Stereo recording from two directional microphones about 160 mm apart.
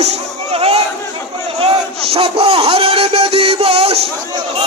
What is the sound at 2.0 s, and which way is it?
Music, 35° right (ahead or behind).